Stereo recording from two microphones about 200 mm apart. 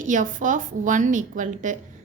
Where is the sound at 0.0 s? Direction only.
40° right (ahead or behind).